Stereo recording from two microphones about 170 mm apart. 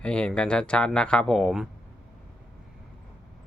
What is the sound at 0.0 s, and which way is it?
Speech, 5° left (ahead or behind).